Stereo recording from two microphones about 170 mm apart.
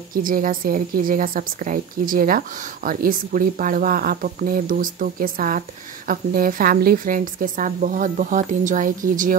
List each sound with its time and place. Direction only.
0.1 s a woman's voice: 55° right (ahead or behind)